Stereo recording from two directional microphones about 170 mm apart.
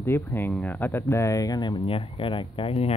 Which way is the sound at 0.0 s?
15° left (ahead or behind).